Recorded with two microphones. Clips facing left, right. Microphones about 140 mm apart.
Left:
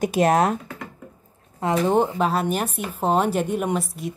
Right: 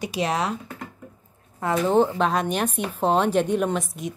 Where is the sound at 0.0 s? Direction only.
50° left (ahead or behind).